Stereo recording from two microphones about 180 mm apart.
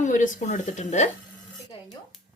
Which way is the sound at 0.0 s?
45° left (ahead or behind).